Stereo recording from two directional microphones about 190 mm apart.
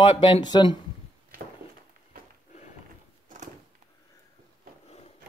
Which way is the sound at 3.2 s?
40° right (ahead or behind).